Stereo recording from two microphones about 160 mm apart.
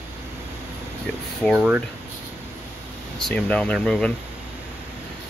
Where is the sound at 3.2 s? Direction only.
5° left (ahead or behind).